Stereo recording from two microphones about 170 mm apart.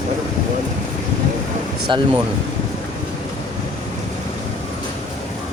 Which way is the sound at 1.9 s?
30° right (ahead or behind).